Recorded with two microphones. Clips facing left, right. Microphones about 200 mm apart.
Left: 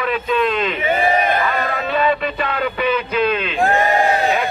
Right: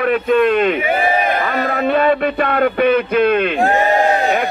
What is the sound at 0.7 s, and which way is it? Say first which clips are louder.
Speech: right 1 dB; 10° right (ahead or behind).